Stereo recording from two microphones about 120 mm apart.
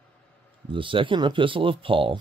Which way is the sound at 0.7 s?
45° right (ahead or behind).